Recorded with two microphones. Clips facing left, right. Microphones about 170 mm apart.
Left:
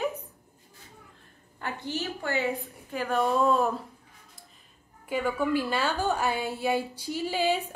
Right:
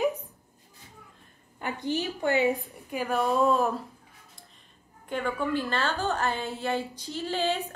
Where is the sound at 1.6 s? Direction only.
15° right (ahead or behind).